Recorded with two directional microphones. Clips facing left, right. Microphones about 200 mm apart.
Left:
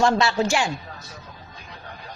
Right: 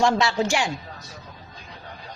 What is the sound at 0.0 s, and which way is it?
Speech, 15° right (ahead or behind).